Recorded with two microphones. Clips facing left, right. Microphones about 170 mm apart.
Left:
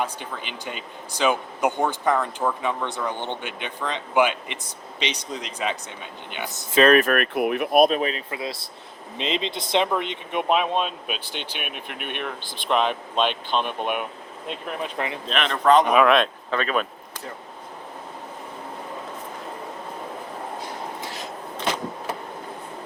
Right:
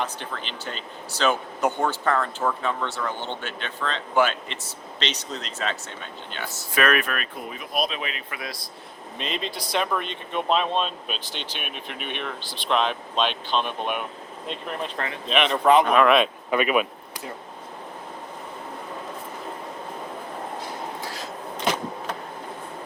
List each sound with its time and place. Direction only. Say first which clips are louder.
0.0 s speech: left 1 dB; 10° left (ahead or behind)
6.8 s speech: left 7 dB; 35° left (ahead or behind)
7.1 s speech: left 10 dB; 65° left (ahead or behind); by 8.2 s 40° left (ahead or behind)
8.3 s speech: left 4 dB; 25° left (ahead or behind); by 11.3 s 10° left (ahead or behind)
11.6 s speech: left 1 dB; 55° left (ahead or behind)
12.6 s speech: left 1 dB; 10° left (ahead or behind); by 17.2 s 10° right (ahead or behind)
21.0 s a sound: even; 20° left (ahead or behind)